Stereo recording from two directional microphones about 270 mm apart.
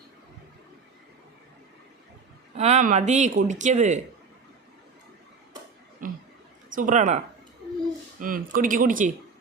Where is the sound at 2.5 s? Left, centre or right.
Right.